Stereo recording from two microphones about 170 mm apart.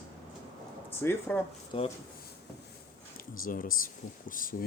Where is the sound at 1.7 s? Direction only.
30° left (ahead or behind).